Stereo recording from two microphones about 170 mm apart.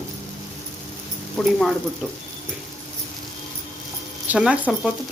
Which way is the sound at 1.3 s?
Centre (ahead or behind).